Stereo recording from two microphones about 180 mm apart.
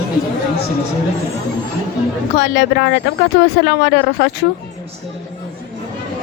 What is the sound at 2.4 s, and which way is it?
A woman's voice, 70° left (ahead or behind).